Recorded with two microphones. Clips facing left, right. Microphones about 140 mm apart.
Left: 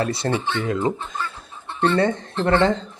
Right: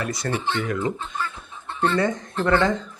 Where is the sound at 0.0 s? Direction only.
25° left (ahead or behind).